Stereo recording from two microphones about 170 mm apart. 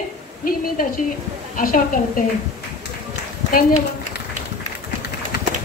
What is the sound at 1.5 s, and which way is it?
Speech, 55° left (ahead or behind).